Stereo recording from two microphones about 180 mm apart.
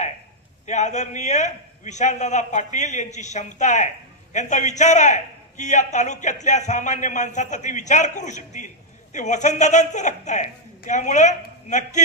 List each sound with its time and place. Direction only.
0.7 s a man's voice: 40° left (ahead or behind)